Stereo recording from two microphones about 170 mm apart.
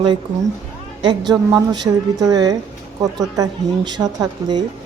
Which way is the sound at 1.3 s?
25° right (ahead or behind).